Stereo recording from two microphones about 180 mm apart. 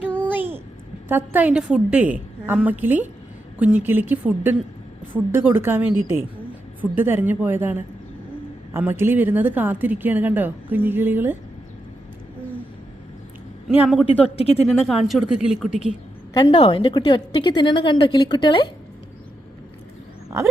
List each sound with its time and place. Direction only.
1.0 s a woman's voice: 10° right (ahead or behind)
13.7 s speech: centre (ahead or behind)
14.1 s speech: 35° left (ahead or behind)
14.7 s speech: centre (ahead or behind)
16.4 s a woman's voice: 30° left (ahead or behind)